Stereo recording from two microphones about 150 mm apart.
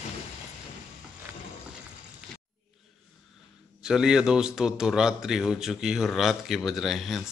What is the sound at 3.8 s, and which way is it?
Speech, 5° right (ahead or behind).